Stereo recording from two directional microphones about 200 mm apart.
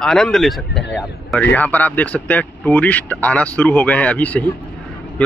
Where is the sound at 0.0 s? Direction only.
5° left (ahead or behind).